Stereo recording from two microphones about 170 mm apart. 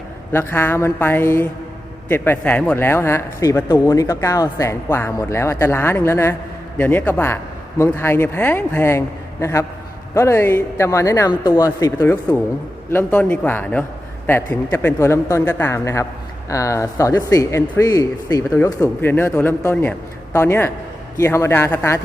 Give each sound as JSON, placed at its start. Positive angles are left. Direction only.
{"t": 0.3, "sound": "speech", "side_deg": 15}